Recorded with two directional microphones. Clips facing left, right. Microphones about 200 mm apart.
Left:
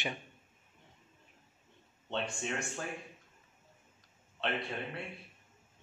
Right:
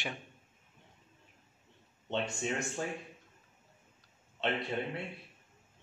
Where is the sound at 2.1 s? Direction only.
20° right (ahead or behind).